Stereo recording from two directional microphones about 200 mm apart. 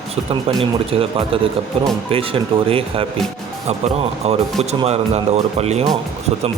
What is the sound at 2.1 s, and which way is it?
A man's voice, 30° right (ahead or behind).